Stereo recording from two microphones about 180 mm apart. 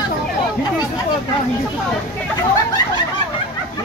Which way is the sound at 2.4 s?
20° left (ahead or behind).